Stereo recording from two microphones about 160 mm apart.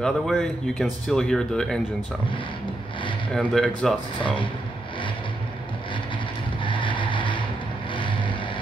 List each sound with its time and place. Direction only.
0.0 s speech: 5° left (ahead or behind)
3.3 s speech: centre (ahead or behind)
6.6 s mechanisms: 30° left (ahead or behind)